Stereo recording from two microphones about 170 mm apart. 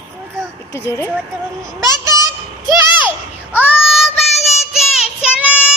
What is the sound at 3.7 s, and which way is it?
Child singing, 5° right (ahead or behind).